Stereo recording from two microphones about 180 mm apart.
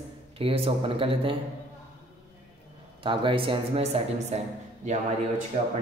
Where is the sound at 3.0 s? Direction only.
30° right (ahead or behind).